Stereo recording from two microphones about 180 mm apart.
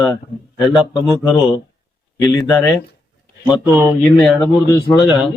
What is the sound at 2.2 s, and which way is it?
Mantra, 20° left (ahead or behind).